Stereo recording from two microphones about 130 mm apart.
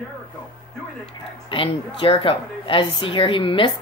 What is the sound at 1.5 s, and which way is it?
A woman's voice, 40° left (ahead or behind).